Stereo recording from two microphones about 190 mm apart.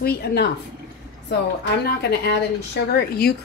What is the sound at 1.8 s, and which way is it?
Speech, 60° left (ahead or behind).